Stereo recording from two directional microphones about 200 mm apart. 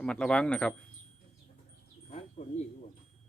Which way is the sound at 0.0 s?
5° left (ahead or behind).